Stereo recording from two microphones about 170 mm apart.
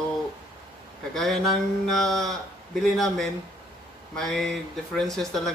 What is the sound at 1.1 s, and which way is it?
Speech, centre (ahead or behind).